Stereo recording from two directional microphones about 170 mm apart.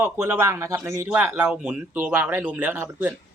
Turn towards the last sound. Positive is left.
turn(degrees=-10)  # may be behind; listen again after turning